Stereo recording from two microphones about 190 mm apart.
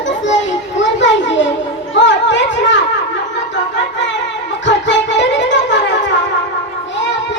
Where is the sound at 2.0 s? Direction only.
70° left (ahead or behind).